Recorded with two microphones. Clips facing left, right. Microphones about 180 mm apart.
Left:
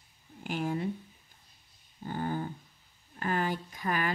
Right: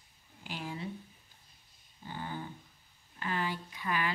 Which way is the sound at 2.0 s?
50° left (ahead or behind).